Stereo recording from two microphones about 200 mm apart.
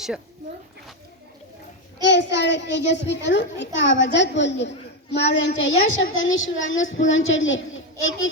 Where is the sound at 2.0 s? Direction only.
60° left (ahead or behind).